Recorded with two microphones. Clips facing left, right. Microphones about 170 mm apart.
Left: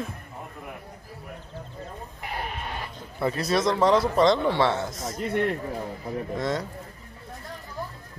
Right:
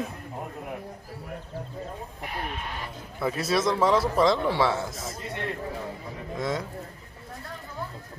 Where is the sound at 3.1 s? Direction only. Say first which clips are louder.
Left 1 dB; 5° right (ahead or behind).